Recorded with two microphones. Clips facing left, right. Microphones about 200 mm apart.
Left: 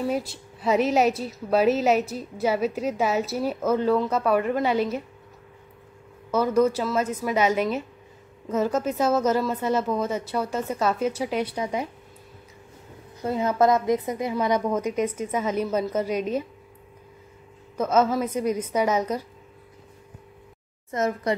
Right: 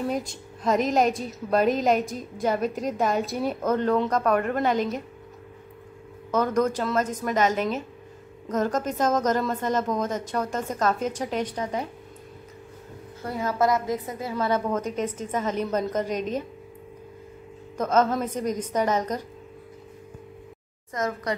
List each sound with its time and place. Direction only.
0.1 s a woman's voice: 5° left (ahead or behind)
6.3 s a woman's voice: 10° left (ahead or behind)
13.2 s a woman's voice: 20° left (ahead or behind)
17.7 s a woman's voice: 10° left (ahead or behind)
20.9 s speech: 25° left (ahead or behind)